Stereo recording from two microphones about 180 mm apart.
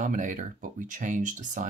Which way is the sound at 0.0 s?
45° right (ahead or behind).